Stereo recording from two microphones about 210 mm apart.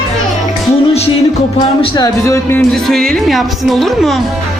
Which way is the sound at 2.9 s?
Centre (ahead or behind).